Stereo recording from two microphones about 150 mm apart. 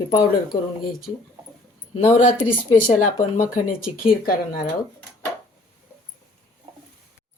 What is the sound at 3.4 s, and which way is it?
Speech, 70° left (ahead or behind).